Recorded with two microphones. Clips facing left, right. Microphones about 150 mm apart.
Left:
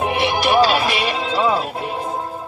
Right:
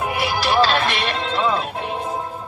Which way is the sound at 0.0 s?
25° left (ahead or behind).